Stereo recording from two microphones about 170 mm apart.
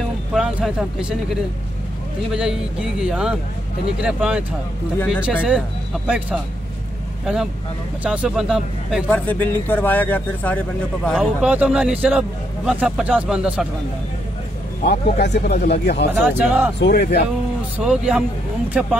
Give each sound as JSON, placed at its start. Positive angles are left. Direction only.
{"t": 0.3, "sound": "a man's voice", "side_deg": -5}
{"t": 4.9, "sound": "a man's voice", "side_deg": 5}
{"t": 6.0, "sound": "speech", "side_deg": -5}
{"t": 8.0, "sound": "a man's voice", "side_deg": -5}
{"t": 9.1, "sound": "a man's voice", "side_deg": 10}
{"t": 14.9, "sound": "speech", "side_deg": 75}
{"t": 16.3, "sound": "speech", "side_deg": -10}
{"t": 16.8, "sound": "speech", "side_deg": 70}
{"t": 17.7, "sound": "a man's voice", "side_deg": -5}